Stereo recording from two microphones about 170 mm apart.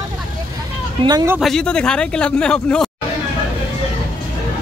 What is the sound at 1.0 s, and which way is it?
Speech, 25° right (ahead or behind).